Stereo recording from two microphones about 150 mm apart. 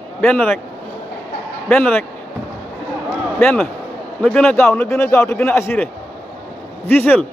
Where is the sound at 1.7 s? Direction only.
10° left (ahead or behind).